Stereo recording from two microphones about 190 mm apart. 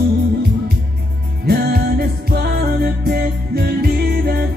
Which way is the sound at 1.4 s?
55° right (ahead or behind).